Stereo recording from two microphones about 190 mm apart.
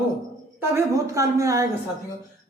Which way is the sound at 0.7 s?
15° right (ahead or behind).